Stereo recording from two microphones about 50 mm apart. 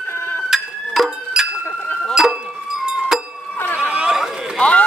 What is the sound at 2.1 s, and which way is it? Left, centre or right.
Music, centre.